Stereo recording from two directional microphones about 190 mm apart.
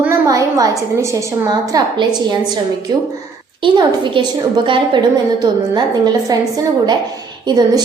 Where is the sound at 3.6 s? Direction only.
25° right (ahead or behind).